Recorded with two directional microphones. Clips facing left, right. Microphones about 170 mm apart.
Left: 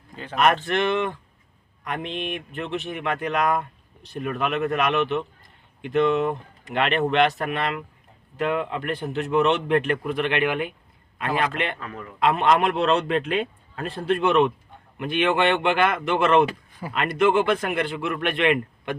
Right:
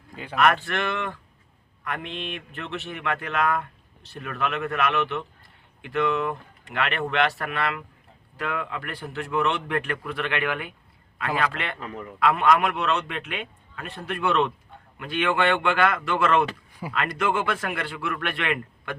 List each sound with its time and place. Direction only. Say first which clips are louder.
0.3 s speech: left 2 dB; 20° left (ahead or behind)
11.8 s a man's voice: right 1 dB; 20° right (ahead or behind)
12.2 s speech: left 1 dB; 25° left (ahead or behind)
16.8 s speech: even; 5° right (ahead or behind)
17.2 s speech: left 8 dB; 20° left (ahead or behind)